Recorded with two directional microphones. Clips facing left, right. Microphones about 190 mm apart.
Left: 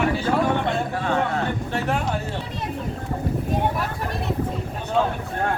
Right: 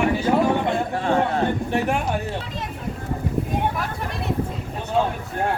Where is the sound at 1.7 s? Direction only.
15° right (ahead or behind).